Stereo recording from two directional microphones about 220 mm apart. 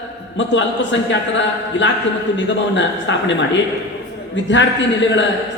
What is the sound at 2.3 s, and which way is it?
Speech, 55° left (ahead or behind).